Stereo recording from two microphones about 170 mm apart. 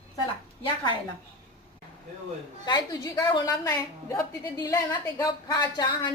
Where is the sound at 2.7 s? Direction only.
25° left (ahead or behind).